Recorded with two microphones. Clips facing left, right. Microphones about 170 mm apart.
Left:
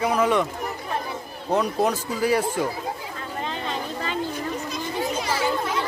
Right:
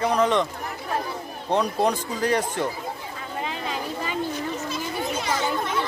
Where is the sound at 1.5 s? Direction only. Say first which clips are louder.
Even; 5° left (ahead or behind).